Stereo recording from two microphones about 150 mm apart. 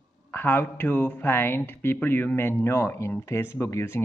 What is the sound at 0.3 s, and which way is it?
A man's voice, 15° left (ahead or behind).